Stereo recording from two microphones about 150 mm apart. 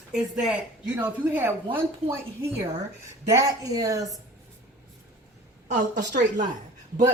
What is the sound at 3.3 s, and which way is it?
Speech, 25° right (ahead or behind).